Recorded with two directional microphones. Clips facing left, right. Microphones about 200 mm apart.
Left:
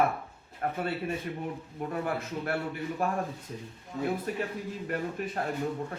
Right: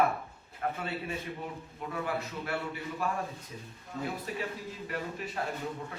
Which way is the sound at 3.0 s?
55° left (ahead or behind).